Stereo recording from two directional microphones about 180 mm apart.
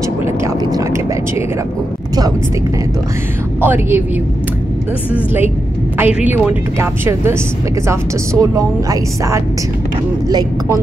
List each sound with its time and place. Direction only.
0.2 s a sound: 15° right (ahead or behind)
3.6 s speech: 10° right (ahead or behind)
5.1 s speech: 10° right (ahead or behind)